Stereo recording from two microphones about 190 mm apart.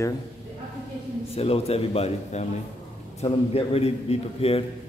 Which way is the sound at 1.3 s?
30° left (ahead or behind).